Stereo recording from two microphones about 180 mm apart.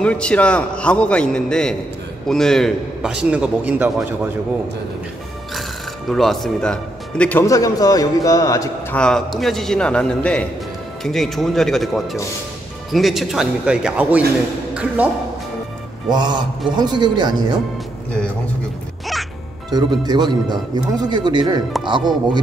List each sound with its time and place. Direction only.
0.0 s a man's voice: 5° left (ahead or behind); by 4.3 s 10° right (ahead or behind)
6.0 s speech: centre (ahead or behind); by 8.6 s 20° left (ahead or behind)
8.9 s a man's voice: 5° left (ahead or behind)
16.1 s speech: 25° right (ahead or behind)
19.7 s speech: 25° right (ahead or behind)